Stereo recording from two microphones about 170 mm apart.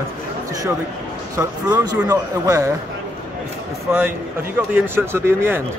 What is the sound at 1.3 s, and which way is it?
A man's voice, 20° right (ahead or behind).